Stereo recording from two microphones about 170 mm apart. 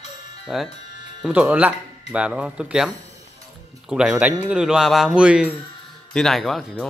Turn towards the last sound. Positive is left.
turn(degrees=0)  # may be behind; listen again after turning